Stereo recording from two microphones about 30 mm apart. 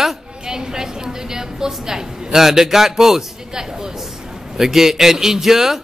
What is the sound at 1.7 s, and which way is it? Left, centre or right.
A man's voice, centre.